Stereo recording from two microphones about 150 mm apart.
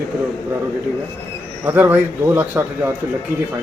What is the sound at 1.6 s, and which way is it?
A man's voice, 15° right (ahead or behind).